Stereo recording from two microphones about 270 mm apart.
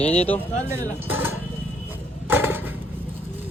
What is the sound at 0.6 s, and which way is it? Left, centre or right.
Speech, centre.